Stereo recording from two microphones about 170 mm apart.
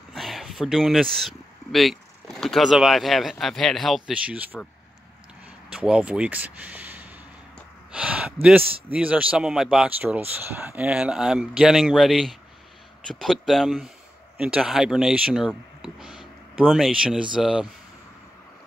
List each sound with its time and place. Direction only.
0.1 s speech: centre (ahead or behind)
5.7 s speech: 5° right (ahead or behind)
8.6 s speech: 35° right (ahead or behind)
8.9 s speech: 10° right (ahead or behind)